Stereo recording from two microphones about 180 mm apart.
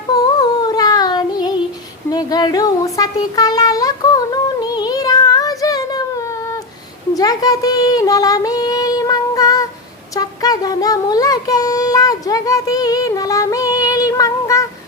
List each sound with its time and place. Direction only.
0.3 s a sound: 20° left (ahead or behind)
7.1 s female singing: 20° left (ahead or behind)
10.2 s child singing: 20° left (ahead or behind)